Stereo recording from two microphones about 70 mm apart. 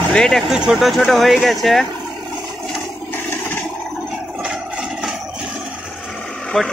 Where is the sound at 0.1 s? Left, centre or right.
Centre.